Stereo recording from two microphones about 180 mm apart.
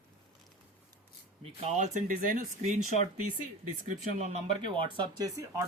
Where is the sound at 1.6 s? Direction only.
40° right (ahead or behind).